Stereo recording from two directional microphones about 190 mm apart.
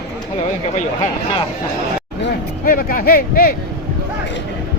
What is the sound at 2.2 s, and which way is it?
Speech, 50° left (ahead or behind).